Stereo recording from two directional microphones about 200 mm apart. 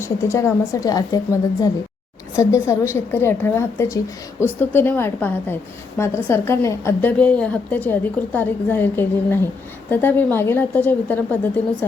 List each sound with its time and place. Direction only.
0.0 s a woman's voice: 15° left (ahead or behind)